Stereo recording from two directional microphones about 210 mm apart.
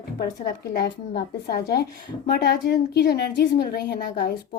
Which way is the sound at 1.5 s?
50° left (ahead or behind).